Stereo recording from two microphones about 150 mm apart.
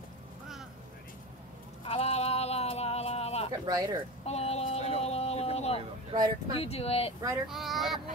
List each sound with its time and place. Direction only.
1.9 s a sound: 40° left (ahead or behind)
3.6 s speech: 25° right (ahead or behind)
4.3 s a sound: 45° left (ahead or behind)
6.1 s speech: 30° right (ahead or behind)
6.5 s speech: 40° left (ahead or behind)
7.4 s speech: centre (ahead or behind)